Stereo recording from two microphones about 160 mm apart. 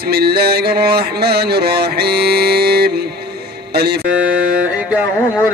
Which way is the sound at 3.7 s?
90° right.